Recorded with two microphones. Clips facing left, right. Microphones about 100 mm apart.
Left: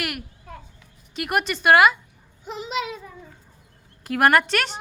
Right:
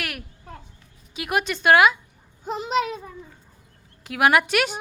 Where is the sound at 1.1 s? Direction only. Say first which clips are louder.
Left 1 dB; centre (ahead or behind).